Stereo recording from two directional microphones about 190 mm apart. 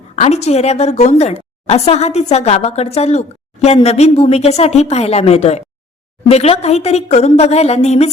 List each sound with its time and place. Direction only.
0.2 s a woman's voice: 35° left (ahead or behind)